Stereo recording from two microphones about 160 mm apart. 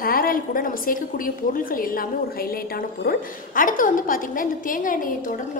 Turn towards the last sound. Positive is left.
turn(degrees=55)  # may be behind; listen again after turning